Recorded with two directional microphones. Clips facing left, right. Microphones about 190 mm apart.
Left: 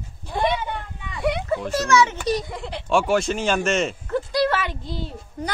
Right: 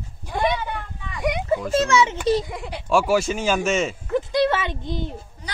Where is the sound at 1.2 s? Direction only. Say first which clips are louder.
Right 1 dB; 15° right (ahead or behind).